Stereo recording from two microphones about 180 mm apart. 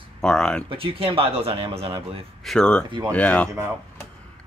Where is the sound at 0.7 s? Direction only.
30° right (ahead or behind).